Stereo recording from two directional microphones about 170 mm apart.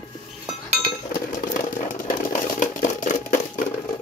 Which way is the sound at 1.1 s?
50° left (ahead or behind).